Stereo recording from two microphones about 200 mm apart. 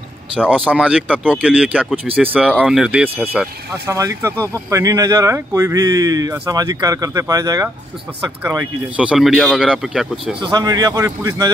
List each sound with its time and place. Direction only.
0.5 s speech: 5° right (ahead or behind)
10.4 s a man's voice: 20° right (ahead or behind)